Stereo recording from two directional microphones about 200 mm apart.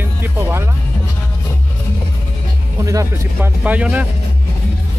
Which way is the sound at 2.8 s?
15° right (ahead or behind).